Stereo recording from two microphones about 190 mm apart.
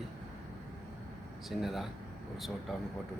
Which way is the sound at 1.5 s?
Centre (ahead or behind).